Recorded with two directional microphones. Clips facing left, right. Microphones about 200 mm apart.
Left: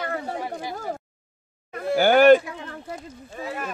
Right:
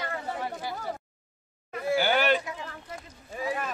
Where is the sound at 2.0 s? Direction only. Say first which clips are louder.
Left 12 dB; 50° left (ahead or behind).